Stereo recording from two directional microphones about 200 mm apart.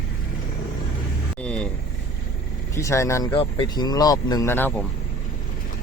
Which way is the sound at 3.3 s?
25° left (ahead or behind).